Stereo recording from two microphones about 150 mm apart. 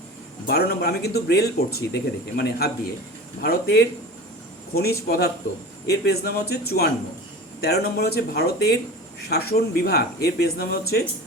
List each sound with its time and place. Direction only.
0.4 s speech: 90° left